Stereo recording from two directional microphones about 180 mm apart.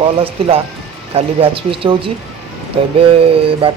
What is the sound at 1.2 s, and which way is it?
Speech, 30° right (ahead or behind).